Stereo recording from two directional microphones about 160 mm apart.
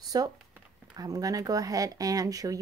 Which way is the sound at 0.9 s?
20° right (ahead or behind).